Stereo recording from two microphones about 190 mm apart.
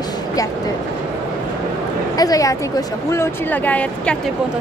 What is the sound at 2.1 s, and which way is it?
A woman's voice, 20° left (ahead or behind).